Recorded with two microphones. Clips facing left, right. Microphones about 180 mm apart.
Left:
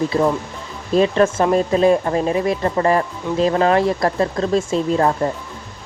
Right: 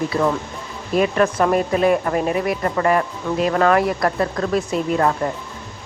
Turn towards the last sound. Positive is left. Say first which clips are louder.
# left 2 dB
turn(degrees=30)  # may be behind; listen again after turning